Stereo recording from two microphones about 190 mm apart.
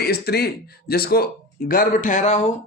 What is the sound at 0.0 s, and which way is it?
Speech, 55° left (ahead or behind).